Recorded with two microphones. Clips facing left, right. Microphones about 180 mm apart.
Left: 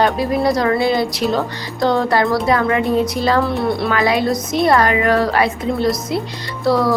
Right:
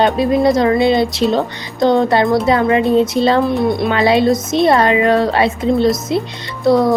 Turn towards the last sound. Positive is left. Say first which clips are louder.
# right 4 dB
turn(degrees=-20)  # may be behind; listen again after turning